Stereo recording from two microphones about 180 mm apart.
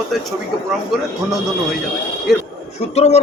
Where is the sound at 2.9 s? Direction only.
35° left (ahead or behind).